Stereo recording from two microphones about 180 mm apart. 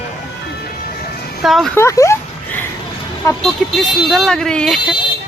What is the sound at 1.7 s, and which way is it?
Speech, 15° left (ahead or behind).